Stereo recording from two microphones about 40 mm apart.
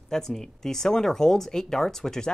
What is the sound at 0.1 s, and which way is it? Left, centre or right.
Speech, centre.